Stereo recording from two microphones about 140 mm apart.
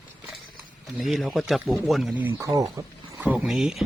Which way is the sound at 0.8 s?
Centre (ahead or behind).